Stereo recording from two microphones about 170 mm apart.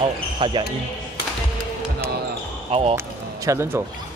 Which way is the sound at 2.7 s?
35° right (ahead or behind).